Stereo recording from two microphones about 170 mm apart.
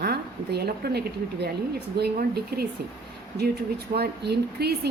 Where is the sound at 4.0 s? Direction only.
70° right (ahead or behind).